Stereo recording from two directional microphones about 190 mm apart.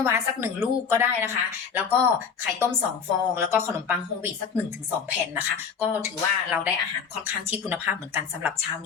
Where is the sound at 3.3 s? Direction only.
10° right (ahead or behind).